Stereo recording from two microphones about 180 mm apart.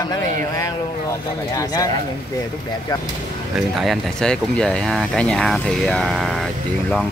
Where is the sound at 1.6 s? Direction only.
20° left (ahead or behind).